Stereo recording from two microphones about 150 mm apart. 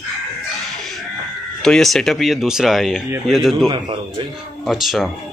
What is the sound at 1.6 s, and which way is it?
Speech, 5° left (ahead or behind).